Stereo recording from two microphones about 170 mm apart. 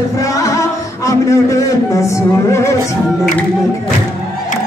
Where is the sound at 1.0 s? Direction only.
20° left (ahead or behind).